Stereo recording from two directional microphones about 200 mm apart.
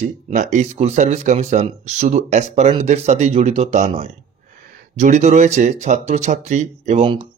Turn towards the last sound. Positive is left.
turn(degrees=-30)  # may be behind; listen again after turning